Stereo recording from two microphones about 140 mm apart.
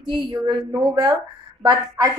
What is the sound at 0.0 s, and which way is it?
A woman's voice, 35° right (ahead or behind).